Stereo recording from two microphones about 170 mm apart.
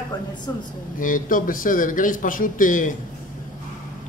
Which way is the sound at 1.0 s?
50° left (ahead or behind).